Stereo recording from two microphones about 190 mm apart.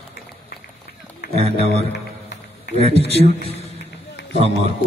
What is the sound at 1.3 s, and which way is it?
Speech, 30° right (ahead or behind).